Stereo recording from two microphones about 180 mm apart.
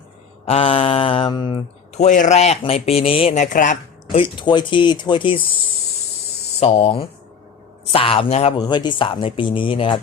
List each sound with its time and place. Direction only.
0.4 s speech: 30° left (ahead or behind)
2.0 s speech: 45° left (ahead or behind)
4.1 s speech: 30° left (ahead or behind)